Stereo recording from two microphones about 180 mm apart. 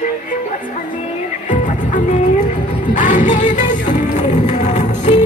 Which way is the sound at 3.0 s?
45° left (ahead or behind).